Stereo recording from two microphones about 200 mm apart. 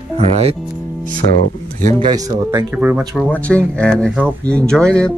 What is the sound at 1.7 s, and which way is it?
Speech, 35° right (ahead or behind).